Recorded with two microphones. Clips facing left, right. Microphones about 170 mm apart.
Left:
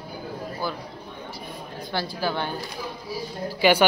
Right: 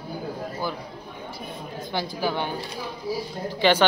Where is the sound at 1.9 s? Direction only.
15° right (ahead or behind).